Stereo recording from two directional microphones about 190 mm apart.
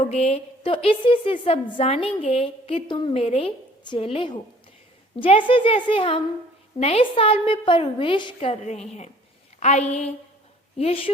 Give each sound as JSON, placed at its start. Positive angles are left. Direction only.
{"t": 0.0, "sound": "a woman's voice", "side_deg": 35}